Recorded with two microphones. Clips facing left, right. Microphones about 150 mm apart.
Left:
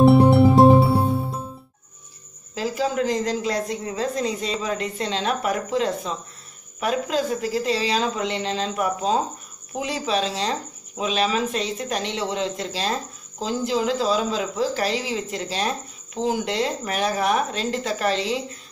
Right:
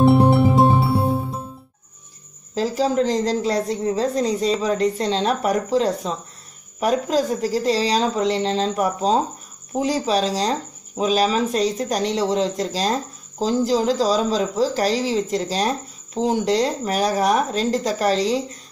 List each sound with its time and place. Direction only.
0.0 s music: centre (ahead or behind)
2.5 s speech: 35° right (ahead or behind)